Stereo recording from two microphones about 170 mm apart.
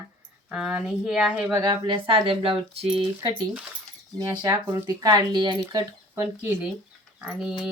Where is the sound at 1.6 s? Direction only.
30° right (ahead or behind).